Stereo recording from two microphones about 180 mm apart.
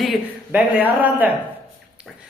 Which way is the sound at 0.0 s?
5° right (ahead or behind).